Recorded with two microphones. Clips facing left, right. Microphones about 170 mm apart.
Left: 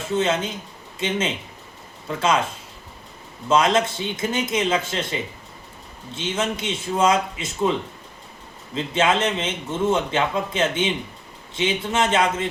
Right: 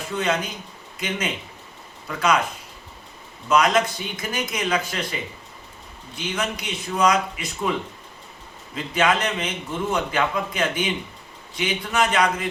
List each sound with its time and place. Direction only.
0.0 s a man's voice: 25° left (ahead or behind)
3.5 s a man's voice: 25° left (ahead or behind)